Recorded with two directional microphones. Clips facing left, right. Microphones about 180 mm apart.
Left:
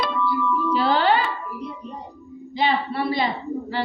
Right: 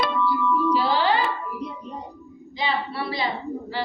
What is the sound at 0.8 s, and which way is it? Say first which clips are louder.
Music: left 2 dB; 60° left (ahead or behind).